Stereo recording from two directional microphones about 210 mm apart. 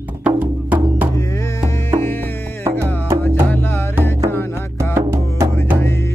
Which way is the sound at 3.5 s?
10° left (ahead or behind).